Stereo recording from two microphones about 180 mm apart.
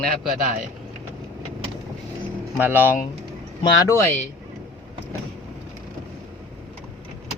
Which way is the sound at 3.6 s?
20° left (ahead or behind).